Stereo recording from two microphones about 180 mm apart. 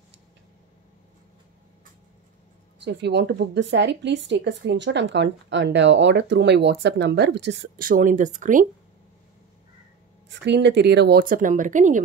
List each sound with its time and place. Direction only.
2.8 s speech: 70° right (ahead or behind)
7.8 s speech: 50° right (ahead or behind)
10.3 s speech: 75° right (ahead or behind); by 12.0 s 45° right (ahead or behind)